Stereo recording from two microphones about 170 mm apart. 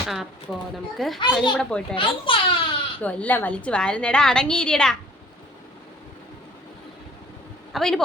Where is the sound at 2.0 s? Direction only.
30° left (ahead or behind).